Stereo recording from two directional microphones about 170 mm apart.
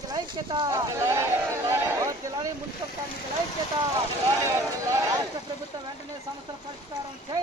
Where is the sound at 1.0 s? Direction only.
15° right (ahead or behind).